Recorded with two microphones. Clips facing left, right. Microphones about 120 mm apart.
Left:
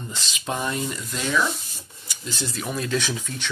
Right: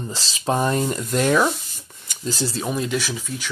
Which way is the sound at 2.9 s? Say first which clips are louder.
Right 1 dB; 5° right (ahead or behind).